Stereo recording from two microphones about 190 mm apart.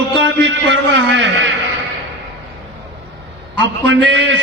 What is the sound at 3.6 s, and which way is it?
Speech, 70° right (ahead or behind).